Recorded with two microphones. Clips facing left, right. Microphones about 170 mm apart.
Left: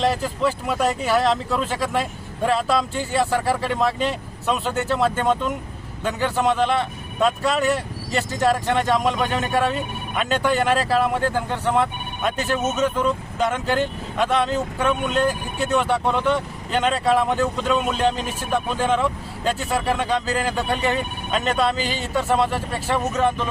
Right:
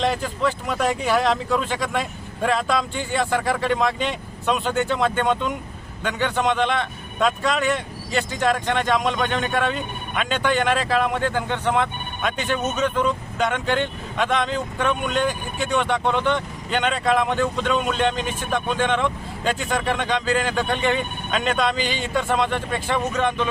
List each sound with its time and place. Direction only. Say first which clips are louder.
0.0 s speech: left 1 dB; 5° left (ahead or behind)